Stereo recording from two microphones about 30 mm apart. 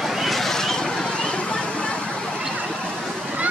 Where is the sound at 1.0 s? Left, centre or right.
Left.